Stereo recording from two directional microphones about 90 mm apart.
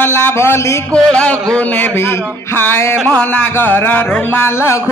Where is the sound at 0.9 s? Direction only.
15° left (ahead or behind).